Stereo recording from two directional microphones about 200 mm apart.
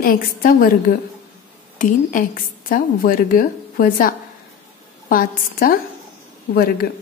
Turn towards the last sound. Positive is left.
turn(degrees=50)  # may be behind; listen again after turning